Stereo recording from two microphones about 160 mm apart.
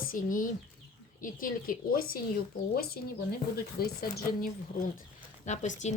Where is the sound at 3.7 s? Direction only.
70° left (ahead or behind).